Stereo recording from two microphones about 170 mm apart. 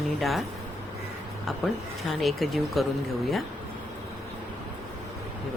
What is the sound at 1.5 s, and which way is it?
Speech, centre (ahead or behind).